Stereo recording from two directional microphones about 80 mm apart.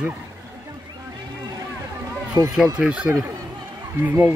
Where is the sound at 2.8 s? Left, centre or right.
Centre.